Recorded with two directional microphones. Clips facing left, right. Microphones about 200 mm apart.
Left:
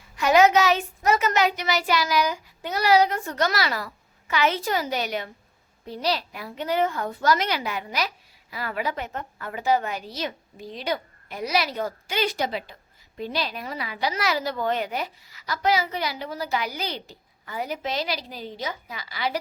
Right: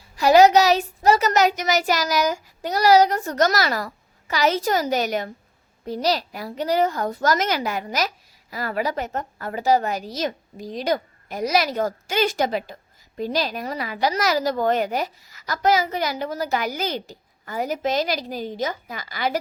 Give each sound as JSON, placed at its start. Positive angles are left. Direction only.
{"t": 0.2, "sound": "a child's voice", "side_deg": -35}